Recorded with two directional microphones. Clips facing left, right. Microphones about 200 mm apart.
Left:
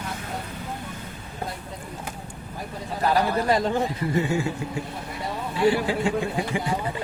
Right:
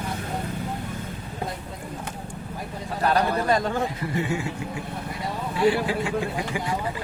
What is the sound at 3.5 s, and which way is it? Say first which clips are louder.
Speech: left 1 dB; 20° left (ahead or behind).